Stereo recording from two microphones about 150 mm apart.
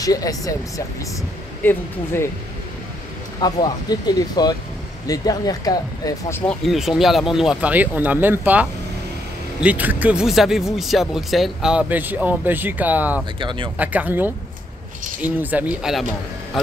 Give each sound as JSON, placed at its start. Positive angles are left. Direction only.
{"t": 0.0, "sound": "speech", "side_deg": 25}
{"t": 3.3, "sound": "speech", "side_deg": 25}
{"t": 6.4, "sound": "speech", "side_deg": 5}
{"t": 13.4, "sound": "speech", "side_deg": -35}
{"t": 13.7, "sound": "speech", "side_deg": -10}